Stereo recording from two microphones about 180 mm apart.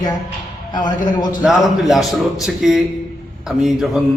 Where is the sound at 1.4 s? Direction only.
Centre (ahead or behind).